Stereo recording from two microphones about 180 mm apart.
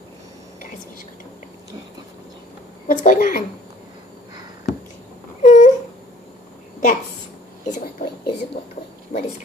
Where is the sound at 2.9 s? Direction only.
45° left (ahead or behind).